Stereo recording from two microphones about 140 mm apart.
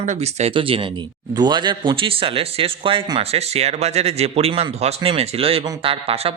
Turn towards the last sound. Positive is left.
turn(degrees=-45)  # may be behind; listen again after turning